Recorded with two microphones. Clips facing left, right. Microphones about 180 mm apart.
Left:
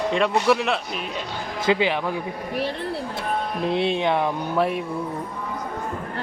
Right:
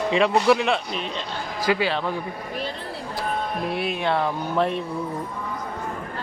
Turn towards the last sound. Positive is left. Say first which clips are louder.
# left 1 dB
turn(degrees=10)  # may be behind; listen again after turning